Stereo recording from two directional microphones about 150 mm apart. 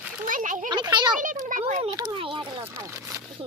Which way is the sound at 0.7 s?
30° right (ahead or behind).